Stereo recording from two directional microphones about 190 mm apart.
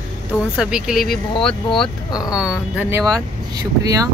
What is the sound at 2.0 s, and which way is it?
Speech, 20° left (ahead or behind).